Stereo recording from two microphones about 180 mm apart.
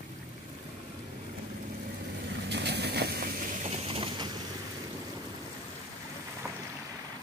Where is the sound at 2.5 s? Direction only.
65° right (ahead or behind).